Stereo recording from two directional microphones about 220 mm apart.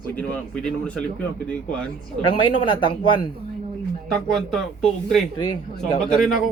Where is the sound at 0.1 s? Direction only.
5° left (ahead or behind).